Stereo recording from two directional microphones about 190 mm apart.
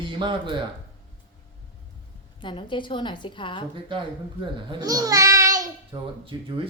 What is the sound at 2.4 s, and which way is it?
A woman's voice, 25° left (ahead or behind).